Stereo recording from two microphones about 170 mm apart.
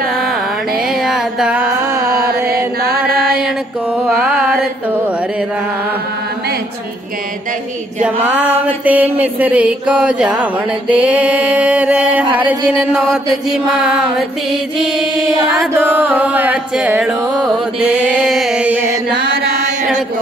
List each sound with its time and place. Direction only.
1.0 s a sound: 5° right (ahead or behind)
2.0 s chant: 65° right (ahead or behind)
4.1 s carnatic music: 5° right (ahead or behind)
8.3 s mantra: 5° right (ahead or behind)
15.7 s mantra: 10° right (ahead or behind)
17.7 s music: 5° right (ahead or behind)
19.3 s chant: 70° right (ahead or behind)